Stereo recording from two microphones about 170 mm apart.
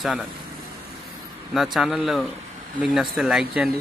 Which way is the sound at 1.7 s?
Centre (ahead or behind).